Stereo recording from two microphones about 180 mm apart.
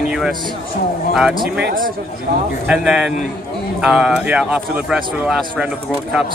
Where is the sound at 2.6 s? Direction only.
5° right (ahead or behind).